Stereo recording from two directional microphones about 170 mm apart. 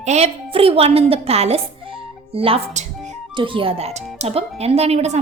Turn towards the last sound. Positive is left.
turn(degrees=-40)  # may be behind; listen again after turning